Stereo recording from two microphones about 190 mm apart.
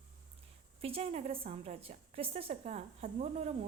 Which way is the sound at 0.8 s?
30° right (ahead or behind).